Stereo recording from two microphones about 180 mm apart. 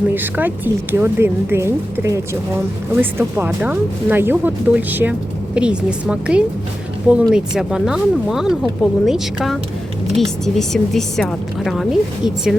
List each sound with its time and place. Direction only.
0.1 s speech: 10° right (ahead or behind)